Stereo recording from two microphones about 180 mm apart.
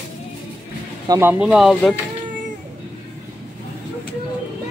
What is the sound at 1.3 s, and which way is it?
Speech, 5° right (ahead or behind).